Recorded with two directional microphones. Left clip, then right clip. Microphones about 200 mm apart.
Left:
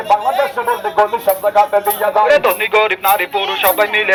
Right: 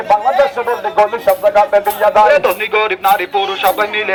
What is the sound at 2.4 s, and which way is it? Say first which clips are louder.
Speech: left 1 dB; 55° right (ahead or behind).